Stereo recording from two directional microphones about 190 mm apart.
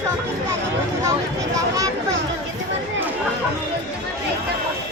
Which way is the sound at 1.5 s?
15° right (ahead or behind).